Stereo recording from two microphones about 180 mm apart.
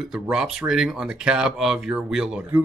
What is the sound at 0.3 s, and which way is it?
Speech, 5° right (ahead or behind).